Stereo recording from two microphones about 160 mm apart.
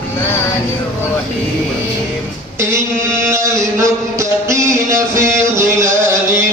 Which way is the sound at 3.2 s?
20° right (ahead or behind).